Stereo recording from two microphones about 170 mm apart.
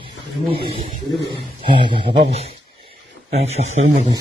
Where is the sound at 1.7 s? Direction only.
30° right (ahead or behind).